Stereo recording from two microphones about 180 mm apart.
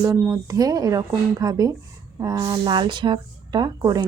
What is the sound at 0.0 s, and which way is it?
A woman's voice, 15° right (ahead or behind).